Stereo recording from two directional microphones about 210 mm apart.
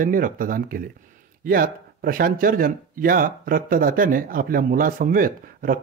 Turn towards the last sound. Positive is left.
turn(degrees=-40)  # may be behind; listen again after turning